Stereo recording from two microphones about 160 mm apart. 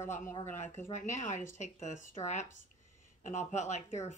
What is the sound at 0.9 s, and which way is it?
Speech, 50° left (ahead or behind).